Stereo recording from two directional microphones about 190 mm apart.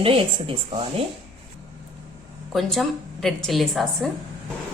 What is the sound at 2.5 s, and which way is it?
A woman's voice, centre (ahead or behind).